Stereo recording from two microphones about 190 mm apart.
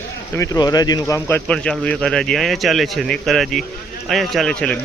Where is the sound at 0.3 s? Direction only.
20° left (ahead or behind).